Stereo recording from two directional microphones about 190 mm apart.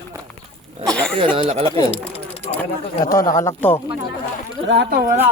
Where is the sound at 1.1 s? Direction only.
30° right (ahead or behind).